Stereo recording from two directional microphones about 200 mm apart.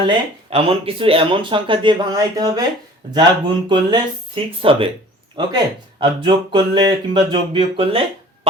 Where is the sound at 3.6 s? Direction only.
25° right (ahead or behind).